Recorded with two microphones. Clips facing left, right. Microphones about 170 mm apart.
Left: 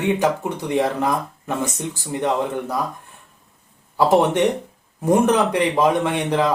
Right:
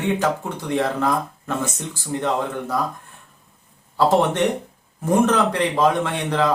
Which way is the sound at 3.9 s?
15° left (ahead or behind).